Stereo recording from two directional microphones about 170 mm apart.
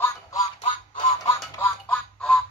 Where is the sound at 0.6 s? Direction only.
30° left (ahead or behind).